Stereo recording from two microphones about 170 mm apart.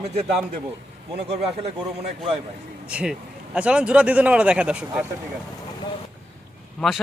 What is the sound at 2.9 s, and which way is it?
A man's voice, 5° right (ahead or behind).